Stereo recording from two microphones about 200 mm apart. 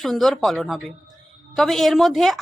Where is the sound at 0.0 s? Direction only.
Centre (ahead or behind).